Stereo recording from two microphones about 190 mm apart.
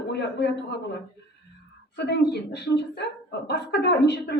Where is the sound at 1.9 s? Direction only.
60° left (ahead or behind).